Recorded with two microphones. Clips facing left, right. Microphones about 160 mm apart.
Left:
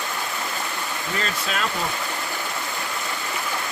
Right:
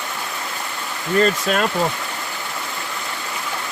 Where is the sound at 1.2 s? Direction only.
50° right (ahead or behind).